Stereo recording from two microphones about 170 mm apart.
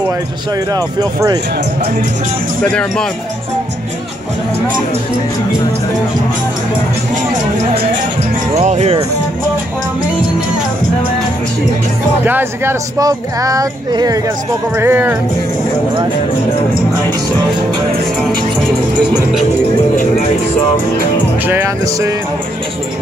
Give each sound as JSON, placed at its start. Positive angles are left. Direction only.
{"t": 0.9, "sound": "speech", "side_deg": -25}
{"t": 2.6, "sound": "speech", "side_deg": 5}
{"t": 8.5, "sound": "speech", "side_deg": -40}
{"t": 12.3, "sound": "speech", "side_deg": -10}
{"t": 14.8, "sound": "music", "side_deg": -15}
{"t": 21.5, "sound": "music", "side_deg": -15}